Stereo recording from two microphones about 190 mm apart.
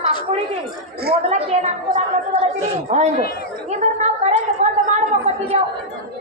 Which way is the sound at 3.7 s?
35° right (ahead or behind).